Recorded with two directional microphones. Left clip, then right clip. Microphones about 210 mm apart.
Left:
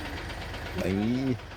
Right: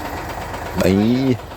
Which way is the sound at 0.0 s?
55° right (ahead or behind).